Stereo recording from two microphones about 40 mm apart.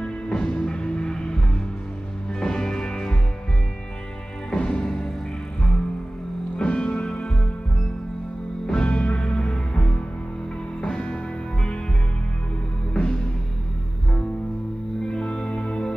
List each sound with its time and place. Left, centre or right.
0.0 s music: centre
4.5 s music: left
6.5 s music: left
8.6 s music: left
12.9 s music: left
15.0 s music: left